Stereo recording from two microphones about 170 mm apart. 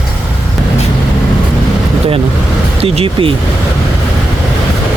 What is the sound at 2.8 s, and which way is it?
Speech, 35° right (ahead or behind).